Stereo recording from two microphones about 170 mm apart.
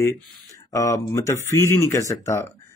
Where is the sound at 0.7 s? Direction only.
20° left (ahead or behind).